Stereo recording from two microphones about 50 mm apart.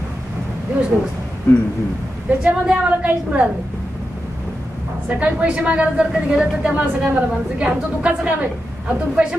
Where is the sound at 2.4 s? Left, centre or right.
Centre.